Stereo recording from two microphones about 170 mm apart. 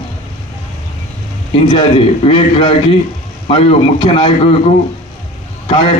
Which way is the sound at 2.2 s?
30° left (ahead or behind).